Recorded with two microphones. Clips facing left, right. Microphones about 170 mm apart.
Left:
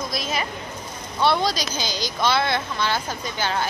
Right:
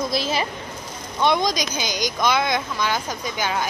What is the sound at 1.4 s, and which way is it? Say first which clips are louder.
Speech: right 1 dB; 15° right (ahead or behind).